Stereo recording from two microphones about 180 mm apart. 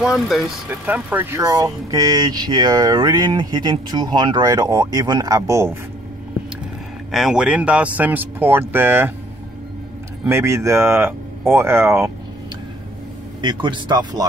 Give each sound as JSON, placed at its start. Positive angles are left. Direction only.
{"t": 0.0, "sound": "speech", "side_deg": 0}
{"t": 7.1, "sound": "speech", "side_deg": 0}
{"t": 10.2, "sound": "speech", "side_deg": -15}
{"t": 13.4, "sound": "speech", "side_deg": -25}